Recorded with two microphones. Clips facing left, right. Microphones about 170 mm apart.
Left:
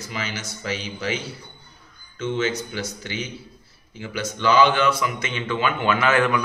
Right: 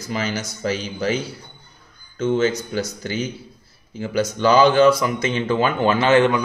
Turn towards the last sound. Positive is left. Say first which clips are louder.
# right 4 dB
turn(degrees=-25)  # may be behind; listen again after turning